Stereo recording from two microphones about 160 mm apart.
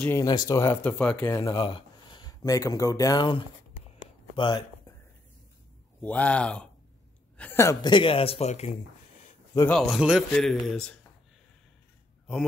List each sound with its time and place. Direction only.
0.1 s speech: 20° left (ahead or behind)
1.3 s speech: 20° left (ahead or behind)
1.6 s speech: 35° left (ahead or behind)
5.9 s speech: 10° left (ahead or behind)
7.3 s a sound: 15° left (ahead or behind)
7.8 s speech: 30° left (ahead or behind)
9.7 s a man's voice: centre (ahead or behind)